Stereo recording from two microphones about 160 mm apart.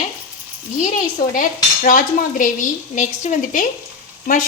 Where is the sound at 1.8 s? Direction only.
60° left (ahead or behind).